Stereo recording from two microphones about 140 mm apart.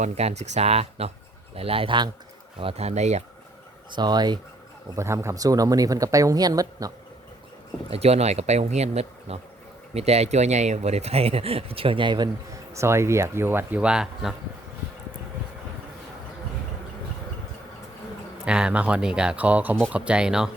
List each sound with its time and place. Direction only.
0.0 s speech: 50° right (ahead or behind)
3.9 s speech: 30° right (ahead or behind)
4.9 s speech: 20° right (ahead or behind)
7.9 s speech: 45° right (ahead or behind)
12.7 s speech: 20° right (ahead or behind); by 14.3 s 5° right (ahead or behind)
18.4 s speech: 5° right (ahead or behind)